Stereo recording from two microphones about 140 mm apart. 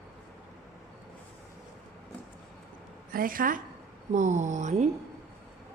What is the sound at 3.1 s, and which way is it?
Speech, 85° right.